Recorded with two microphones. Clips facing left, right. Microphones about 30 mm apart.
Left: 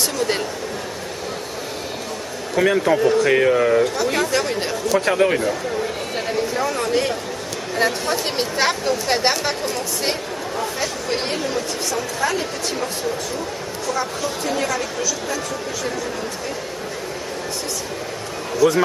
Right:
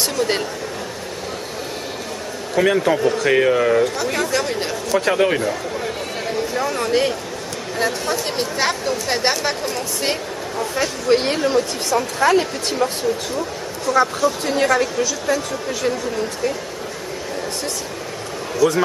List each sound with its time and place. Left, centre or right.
0.2 s speech: centre
2.5 s speech: centre
6.5 s a sound: centre
7.7 s speech: centre
11.2 s speech: right
12.2 s speech: right
13.9 s speech: right